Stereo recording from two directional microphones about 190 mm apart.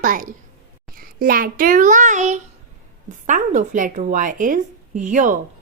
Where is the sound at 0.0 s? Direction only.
45° right (ahead or behind).